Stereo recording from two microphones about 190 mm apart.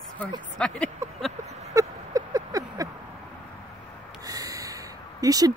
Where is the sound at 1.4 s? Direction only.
35° right (ahead or behind).